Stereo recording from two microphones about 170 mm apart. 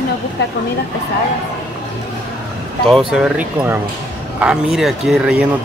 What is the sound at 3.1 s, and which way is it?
Speech, 5° right (ahead or behind).